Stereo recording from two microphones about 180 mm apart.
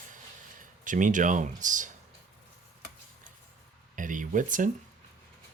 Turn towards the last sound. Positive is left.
turn(degrees=-45)  # may be behind; listen again after turning